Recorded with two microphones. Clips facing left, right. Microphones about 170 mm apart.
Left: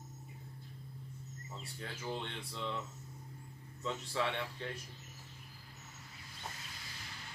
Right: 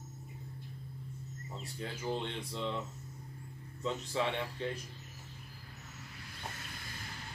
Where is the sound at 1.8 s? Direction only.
20° right (ahead or behind).